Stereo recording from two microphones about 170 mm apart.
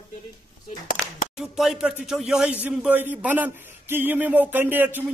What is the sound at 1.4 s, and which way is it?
Speech, 5° right (ahead or behind).